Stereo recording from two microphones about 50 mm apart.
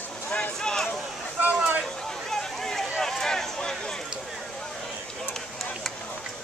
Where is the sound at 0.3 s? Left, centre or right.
Centre.